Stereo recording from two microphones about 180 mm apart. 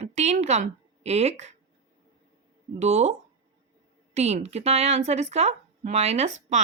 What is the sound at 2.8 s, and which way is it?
Speech, 40° right (ahead or behind).